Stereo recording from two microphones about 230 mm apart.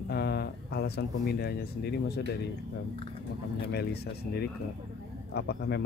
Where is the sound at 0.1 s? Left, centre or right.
Left.